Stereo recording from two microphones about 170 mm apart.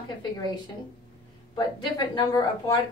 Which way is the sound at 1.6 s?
25° left (ahead or behind).